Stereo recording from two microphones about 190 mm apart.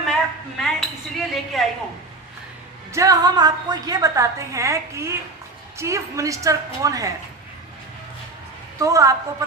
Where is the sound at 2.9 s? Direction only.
15° right (ahead or behind).